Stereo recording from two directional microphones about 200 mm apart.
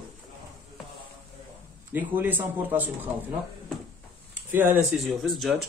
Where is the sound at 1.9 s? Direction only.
10° right (ahead or behind).